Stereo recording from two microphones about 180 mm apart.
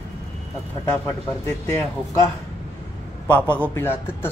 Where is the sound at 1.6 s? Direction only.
15° left (ahead or behind).